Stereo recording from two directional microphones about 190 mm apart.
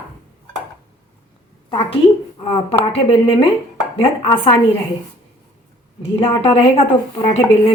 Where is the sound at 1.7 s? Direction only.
30° left (ahead or behind).